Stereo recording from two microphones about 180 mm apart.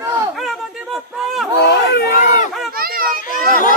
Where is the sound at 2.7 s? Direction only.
55° right (ahead or behind).